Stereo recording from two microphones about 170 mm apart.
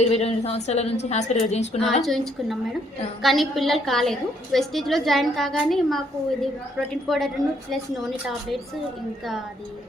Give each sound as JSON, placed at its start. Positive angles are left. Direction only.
{"t": 0.0, "sound": "a woman's voice", "side_deg": 40}
{"t": 2.0, "sound": "a woman's voice", "side_deg": 0}